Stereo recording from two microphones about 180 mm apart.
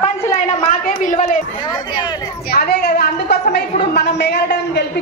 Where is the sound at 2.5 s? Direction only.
60° left (ahead or behind).